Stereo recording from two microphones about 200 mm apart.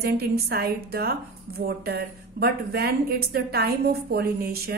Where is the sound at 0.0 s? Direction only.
50° right (ahead or behind).